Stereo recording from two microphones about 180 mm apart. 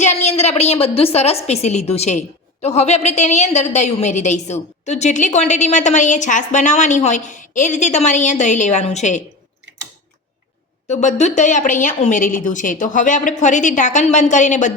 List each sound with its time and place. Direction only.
0.0 s a woman's voice: 40° left (ahead or behind)
10.8 s a woman's voice: 40° left (ahead or behind)